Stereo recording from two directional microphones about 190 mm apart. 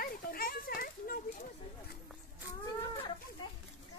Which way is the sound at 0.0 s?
50° left (ahead or behind).